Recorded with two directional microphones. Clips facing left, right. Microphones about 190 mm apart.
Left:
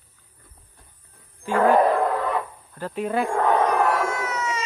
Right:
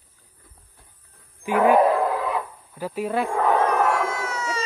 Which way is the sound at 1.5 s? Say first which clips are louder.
Right 1 dB; 10° right (ahead or behind).